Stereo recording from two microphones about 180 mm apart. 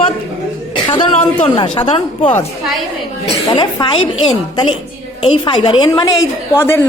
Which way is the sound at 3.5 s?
25° left (ahead or behind).